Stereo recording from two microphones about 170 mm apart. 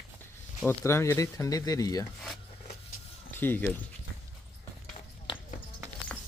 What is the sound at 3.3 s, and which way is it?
Speech, 10° left (ahead or behind).